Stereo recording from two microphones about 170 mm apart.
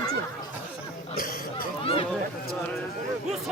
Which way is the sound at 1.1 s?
55° left (ahead or behind).